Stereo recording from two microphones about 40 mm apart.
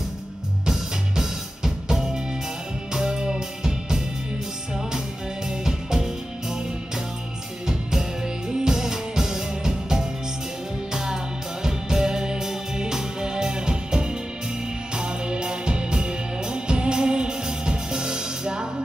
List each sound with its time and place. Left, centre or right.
0.7 s music: centre
5.5 s music: centre
7.6 s music: centre